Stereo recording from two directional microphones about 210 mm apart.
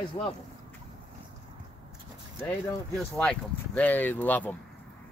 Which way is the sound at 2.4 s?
10° left (ahead or behind).